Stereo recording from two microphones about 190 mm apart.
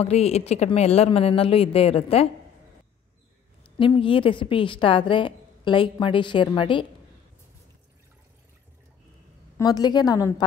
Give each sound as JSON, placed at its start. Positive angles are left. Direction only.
{"t": 0.0, "sound": "speech", "side_deg": 35}
{"t": 3.7, "sound": "a woman's voice", "side_deg": 25}
{"t": 9.6, "sound": "a woman's voice", "side_deg": 20}